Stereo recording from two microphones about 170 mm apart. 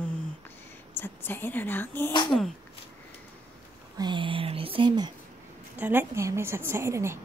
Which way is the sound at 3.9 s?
25° right (ahead or behind).